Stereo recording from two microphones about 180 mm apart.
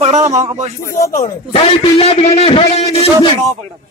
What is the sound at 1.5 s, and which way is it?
A man's voice, 35° left (ahead or behind).